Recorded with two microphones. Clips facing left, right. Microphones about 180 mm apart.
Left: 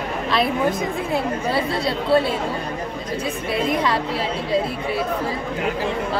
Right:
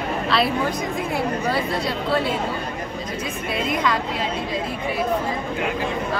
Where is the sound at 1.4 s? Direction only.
30° left (ahead or behind).